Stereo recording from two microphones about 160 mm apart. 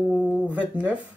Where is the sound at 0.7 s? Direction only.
10° right (ahead or behind).